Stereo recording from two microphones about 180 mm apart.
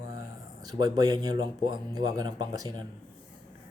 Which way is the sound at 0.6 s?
20° right (ahead or behind).